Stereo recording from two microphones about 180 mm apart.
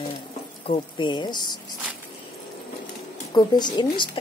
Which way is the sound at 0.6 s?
30° left (ahead or behind).